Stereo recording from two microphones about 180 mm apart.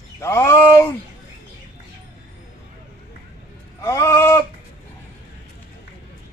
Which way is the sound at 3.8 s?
15° left (ahead or behind).